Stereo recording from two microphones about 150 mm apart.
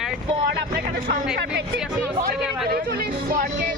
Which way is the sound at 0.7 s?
80° right.